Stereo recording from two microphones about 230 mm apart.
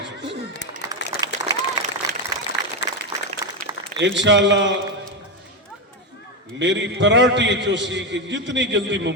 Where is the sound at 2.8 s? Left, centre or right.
Left.